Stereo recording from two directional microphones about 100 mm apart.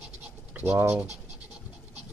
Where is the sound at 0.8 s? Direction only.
25° right (ahead or behind).